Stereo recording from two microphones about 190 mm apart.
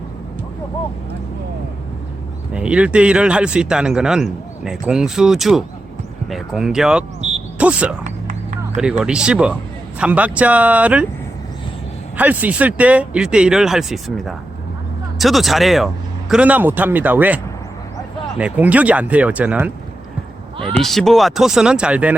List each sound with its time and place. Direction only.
2.5 s speech: 5° right (ahead or behind)
7.2 s a sound: 35° right (ahead or behind)
7.6 s speech: 5° right (ahead or behind)
8.0 s a sound: 40° right (ahead or behind)
8.8 s speech: 5° right (ahead or behind)
12.1 s speech: 10° right (ahead or behind)
20.8 s speech: centre (ahead or behind)